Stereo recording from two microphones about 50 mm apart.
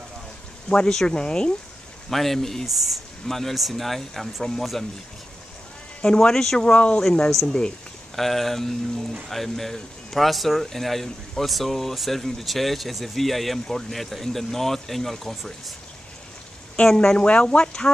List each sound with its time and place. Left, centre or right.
0.7 s speech: centre
2.0 s speech: centre
6.0 s speech: centre
6.7 s speech: left
7.2 s speech: centre
16.7 s speech: centre